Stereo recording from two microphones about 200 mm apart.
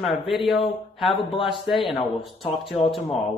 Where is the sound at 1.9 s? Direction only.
25° left (ahead or behind).